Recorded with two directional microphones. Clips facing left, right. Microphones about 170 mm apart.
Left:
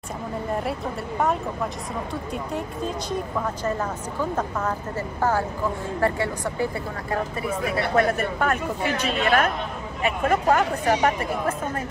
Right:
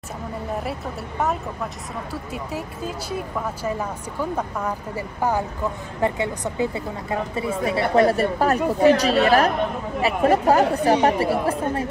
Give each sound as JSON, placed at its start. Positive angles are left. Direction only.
{"t": 2.3, "sound": "a woman's voice", "side_deg": -5}